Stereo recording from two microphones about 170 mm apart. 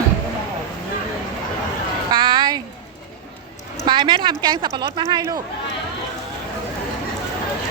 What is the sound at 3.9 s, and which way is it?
A woman's voice, 25° right (ahead or behind).